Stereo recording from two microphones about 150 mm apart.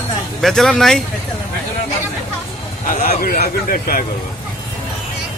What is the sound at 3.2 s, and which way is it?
Speech, 75° left (ahead or behind).